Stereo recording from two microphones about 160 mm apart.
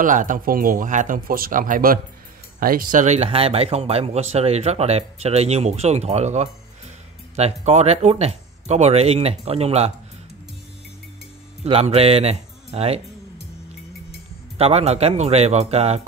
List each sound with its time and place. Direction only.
0.0 s speech: 55° right (ahead or behind)
11.6 s speech: 40° right (ahead or behind)
14.6 s speech: 40° right (ahead or behind)